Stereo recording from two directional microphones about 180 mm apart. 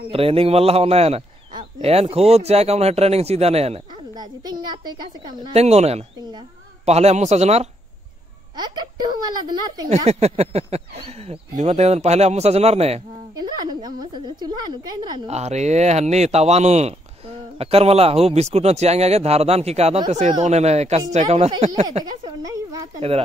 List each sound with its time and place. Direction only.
0.1 s speech: 30° right (ahead or behind)
4.1 s speech: 25° right (ahead or behind)
5.5 s speech: 35° right (ahead or behind)
8.5 s speech: 25° right (ahead or behind)
9.8 s speech: 35° right (ahead or behind)
13.4 s speech: 25° right (ahead or behind)
15.2 s speech: 35° right (ahead or behind)
22.4 s speech: 20° right (ahead or behind)
22.9 s speech: 35° right (ahead or behind)